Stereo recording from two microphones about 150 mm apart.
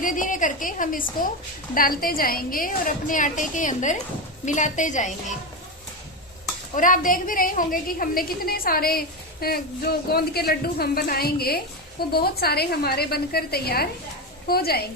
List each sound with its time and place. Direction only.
0.0 s a woman's voice: 65° left (ahead or behind)
6.7 s a woman's voice: 65° left (ahead or behind); by 14.8 s 90° left